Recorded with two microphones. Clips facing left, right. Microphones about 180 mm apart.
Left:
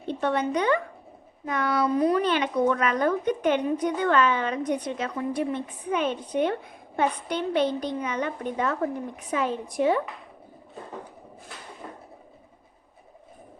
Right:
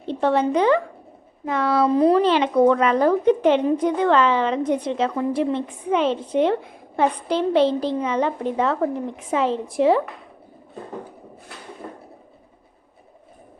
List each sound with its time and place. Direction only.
0.0 s a woman's voice: 25° right (ahead or behind)